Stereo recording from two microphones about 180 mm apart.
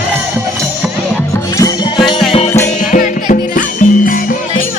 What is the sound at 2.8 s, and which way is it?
Music, 45° left (ahead or behind).